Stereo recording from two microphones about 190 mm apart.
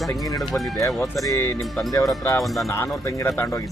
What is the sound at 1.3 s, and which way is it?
Speech, 15° left (ahead or behind).